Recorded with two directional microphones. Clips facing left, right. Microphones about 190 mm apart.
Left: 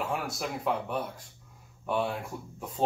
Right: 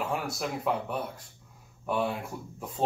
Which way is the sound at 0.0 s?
Centre (ahead or behind).